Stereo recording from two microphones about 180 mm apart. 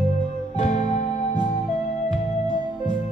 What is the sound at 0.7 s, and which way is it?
Music, 45° left (ahead or behind).